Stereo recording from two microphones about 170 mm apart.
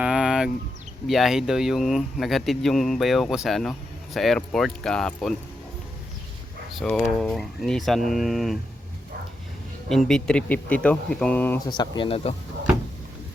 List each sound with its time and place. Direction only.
0.0 s a sound: 5° right (ahead or behind)
1.0 s speech: centre (ahead or behind)
6.7 s speech: centre (ahead or behind)
9.9 s speech: centre (ahead or behind)
11.7 s speech: 30° left (ahead or behind)